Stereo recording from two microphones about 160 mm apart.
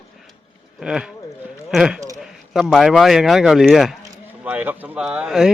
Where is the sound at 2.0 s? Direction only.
20° right (ahead or behind).